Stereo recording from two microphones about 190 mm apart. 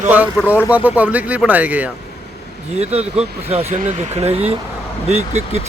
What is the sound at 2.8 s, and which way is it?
Speech, 35° right (ahead or behind).